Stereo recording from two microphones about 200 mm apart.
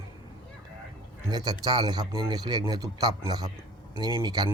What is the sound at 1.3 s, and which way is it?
A man's voice, 20° right (ahead or behind).